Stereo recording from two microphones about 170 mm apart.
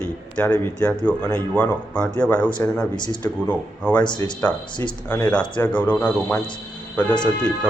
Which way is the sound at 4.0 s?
25° left (ahead or behind).